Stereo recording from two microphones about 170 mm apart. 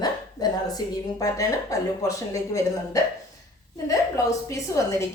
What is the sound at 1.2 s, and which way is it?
A woman's voice, 20° left (ahead or behind).